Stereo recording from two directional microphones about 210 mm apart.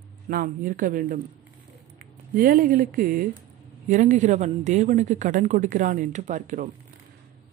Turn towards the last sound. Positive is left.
turn(degrees=-35)  # may be behind; listen again after turning